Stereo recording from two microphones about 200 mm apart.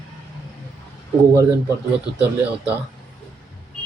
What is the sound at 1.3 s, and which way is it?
Speech, 15° right (ahead or behind).